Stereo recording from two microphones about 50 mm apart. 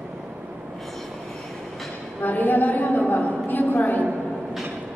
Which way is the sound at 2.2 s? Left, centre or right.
Left.